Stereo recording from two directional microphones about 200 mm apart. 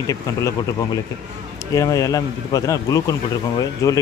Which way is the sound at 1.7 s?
15° left (ahead or behind).